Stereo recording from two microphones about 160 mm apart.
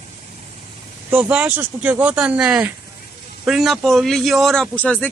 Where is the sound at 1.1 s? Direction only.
5° right (ahead or behind).